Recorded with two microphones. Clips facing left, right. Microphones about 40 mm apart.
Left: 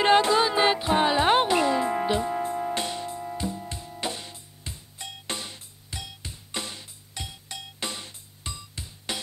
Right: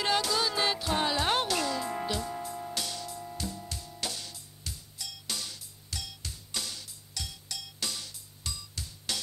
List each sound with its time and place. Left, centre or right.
0.0 s music: left